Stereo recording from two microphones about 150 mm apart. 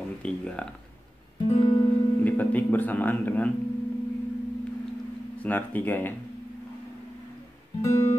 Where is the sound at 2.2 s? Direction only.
10° left (ahead or behind).